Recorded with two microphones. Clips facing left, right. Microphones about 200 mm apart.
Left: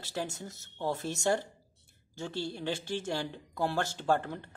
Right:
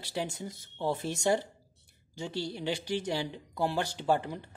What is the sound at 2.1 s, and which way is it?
Speech, 15° right (ahead or behind).